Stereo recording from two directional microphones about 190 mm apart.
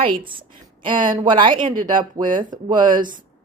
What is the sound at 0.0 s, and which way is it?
A woman's voice, 25° right (ahead or behind).